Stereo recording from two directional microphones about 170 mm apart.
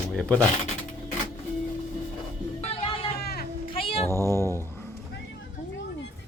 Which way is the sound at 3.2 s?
65° left (ahead or behind).